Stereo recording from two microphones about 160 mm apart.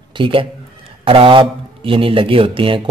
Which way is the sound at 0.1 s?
35° right (ahead or behind).